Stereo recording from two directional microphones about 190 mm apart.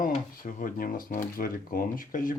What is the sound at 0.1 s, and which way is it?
Speech, 45° left (ahead or behind).